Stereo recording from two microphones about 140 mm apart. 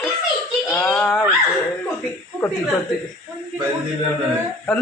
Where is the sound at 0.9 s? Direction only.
5° left (ahead or behind).